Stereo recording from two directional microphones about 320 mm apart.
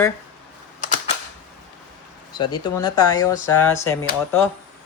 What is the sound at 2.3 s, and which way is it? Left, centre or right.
Speech, centre.